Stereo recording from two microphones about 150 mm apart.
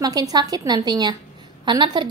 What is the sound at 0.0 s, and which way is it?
A woman's voice, 25° right (ahead or behind).